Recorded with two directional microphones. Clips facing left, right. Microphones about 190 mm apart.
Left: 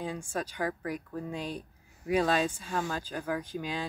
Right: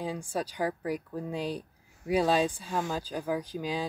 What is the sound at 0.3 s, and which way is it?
Speech, 10° right (ahead or behind).